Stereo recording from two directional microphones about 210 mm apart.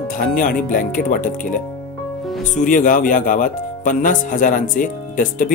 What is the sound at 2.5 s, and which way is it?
Speech, 40° left (ahead or behind).